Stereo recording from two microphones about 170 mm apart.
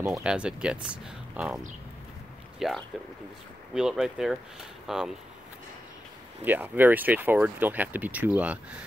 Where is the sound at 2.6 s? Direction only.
Centre (ahead or behind).